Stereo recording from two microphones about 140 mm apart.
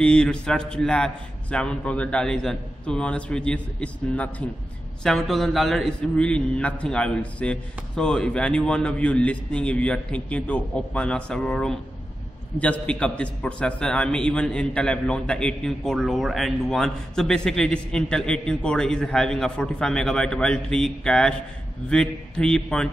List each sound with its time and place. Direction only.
0.0 s a man's voice: 5° left (ahead or behind)